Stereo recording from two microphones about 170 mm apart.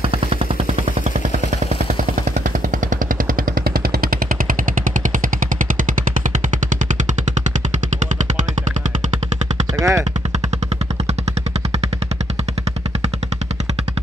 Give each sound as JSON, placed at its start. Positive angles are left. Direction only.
{"t": 0.0, "sound": "gunshot", "side_deg": -35}
{"t": 6.7, "sound": "machine gun", "side_deg": -50}
{"t": 9.8, "sound": "machine gun", "side_deg": -20}